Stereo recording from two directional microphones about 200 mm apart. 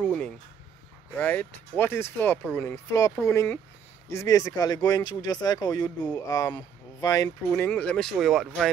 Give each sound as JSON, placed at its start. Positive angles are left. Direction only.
{"t": 1.1, "sound": "speech", "side_deg": 10}
{"t": 7.5, "sound": "speech", "side_deg": 5}